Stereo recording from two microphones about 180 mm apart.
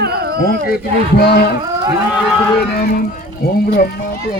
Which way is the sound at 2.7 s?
50° left (ahead or behind).